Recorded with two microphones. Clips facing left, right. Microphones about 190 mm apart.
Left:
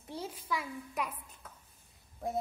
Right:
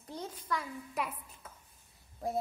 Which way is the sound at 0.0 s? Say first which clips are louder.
Left 1 dB; 5° left (ahead or behind).